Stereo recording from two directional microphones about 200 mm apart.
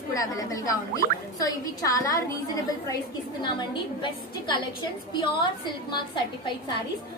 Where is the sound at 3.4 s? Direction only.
25° left (ahead or behind).